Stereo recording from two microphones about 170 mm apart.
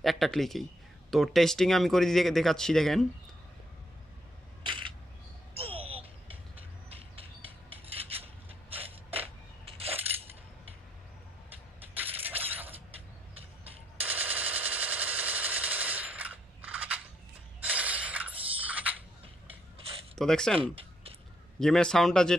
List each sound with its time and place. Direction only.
0.0 s a man's voice: centre (ahead or behind)
4.6 s single-lens reflex camera: 30° right (ahead or behind)
5.6 s a sound: 35° right (ahead or behind)
9.7 s coin: 35° right (ahead or behind)
11.9 s coin: 10° right (ahead or behind)
13.9 s machine gun: 10° right (ahead or behind)
17.6 s a sound: 10° right (ahead or behind)
20.2 s speech: 5° left (ahead or behind)
20.5 s speech: 35° right (ahead or behind)
21.5 s speech: 5° left (ahead or behind)